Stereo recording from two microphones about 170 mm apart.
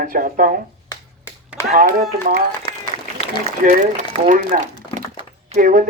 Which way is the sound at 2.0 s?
60° right (ahead or behind).